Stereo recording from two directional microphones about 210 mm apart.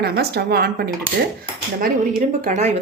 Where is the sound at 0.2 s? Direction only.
50° right (ahead or behind).